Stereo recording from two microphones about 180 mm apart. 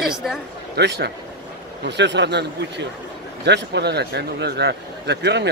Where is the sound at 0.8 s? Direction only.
70° right (ahead or behind).